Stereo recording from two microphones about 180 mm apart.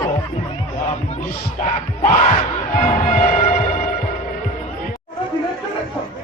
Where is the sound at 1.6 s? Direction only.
40° left (ahead or behind).